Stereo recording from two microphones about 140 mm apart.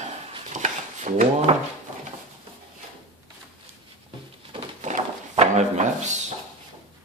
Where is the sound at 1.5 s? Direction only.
45° right (ahead or behind).